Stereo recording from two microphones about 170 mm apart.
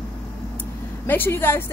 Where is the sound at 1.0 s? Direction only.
15° left (ahead or behind).